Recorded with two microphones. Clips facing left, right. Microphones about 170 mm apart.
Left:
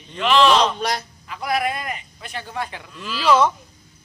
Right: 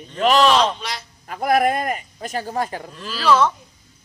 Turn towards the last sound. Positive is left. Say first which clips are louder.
# even
turn(degrees=10)  # may be behind; listen again after turning